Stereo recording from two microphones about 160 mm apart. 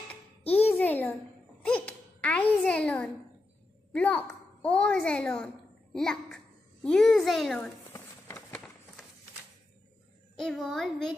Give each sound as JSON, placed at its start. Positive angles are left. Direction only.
{"t": 0.4, "sound": "music", "side_deg": 40}
{"t": 0.7, "sound": "a sound", "side_deg": 10}
{"t": 1.6, "sound": "babbling", "side_deg": 5}
{"t": 3.9, "sound": "a child's voice", "side_deg": 10}
{"t": 7.9, "sound": "a sound", "side_deg": 15}
{"t": 10.4, "sound": "a child's voice", "side_deg": 0}